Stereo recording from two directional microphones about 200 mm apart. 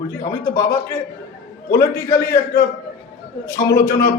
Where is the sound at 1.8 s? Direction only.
15° left (ahead or behind).